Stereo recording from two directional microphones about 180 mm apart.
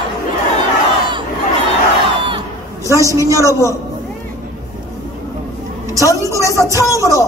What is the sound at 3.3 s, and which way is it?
Speech, 15° left (ahead or behind).